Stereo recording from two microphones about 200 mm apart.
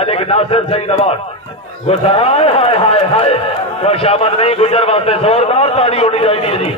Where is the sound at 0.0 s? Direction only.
30° left (ahead or behind).